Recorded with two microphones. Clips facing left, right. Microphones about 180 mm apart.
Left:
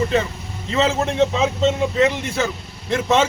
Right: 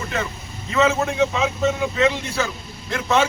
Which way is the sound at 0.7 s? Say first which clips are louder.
Even; 25° left (ahead or behind).